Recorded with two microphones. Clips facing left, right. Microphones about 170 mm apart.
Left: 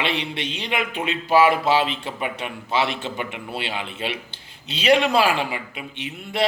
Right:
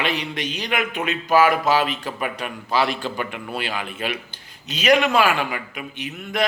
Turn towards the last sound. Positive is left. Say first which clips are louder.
# left 1 dB
turn(degrees=30)  # may be behind; listen again after turning